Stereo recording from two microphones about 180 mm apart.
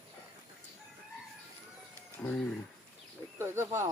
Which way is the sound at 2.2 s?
5° left (ahead or behind).